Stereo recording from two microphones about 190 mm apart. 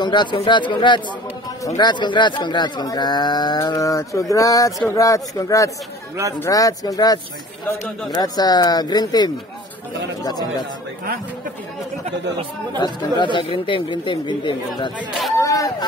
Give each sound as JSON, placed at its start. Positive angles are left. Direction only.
{"t": 0.0, "sound": "speech", "side_deg": 25}
{"t": 8.2, "sound": "speech", "side_deg": 20}
{"t": 12.8, "sound": "speech", "side_deg": 25}
{"t": 15.0, "sound": "speech", "side_deg": 0}
{"t": 15.3, "sound": "speech", "side_deg": 15}